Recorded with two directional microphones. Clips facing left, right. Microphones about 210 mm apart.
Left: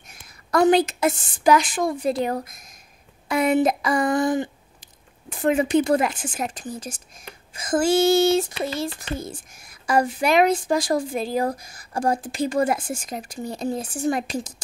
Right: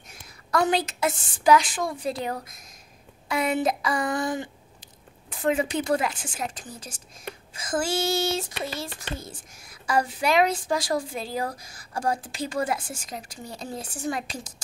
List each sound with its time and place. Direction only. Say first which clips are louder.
0.5 s speech: left 7 dB; 45° left (ahead or behind)